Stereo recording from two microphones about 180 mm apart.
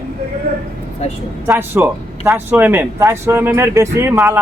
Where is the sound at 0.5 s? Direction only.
40° right (ahead or behind).